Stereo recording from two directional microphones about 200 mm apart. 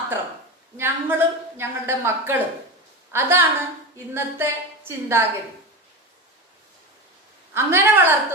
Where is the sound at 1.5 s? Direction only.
10° right (ahead or behind).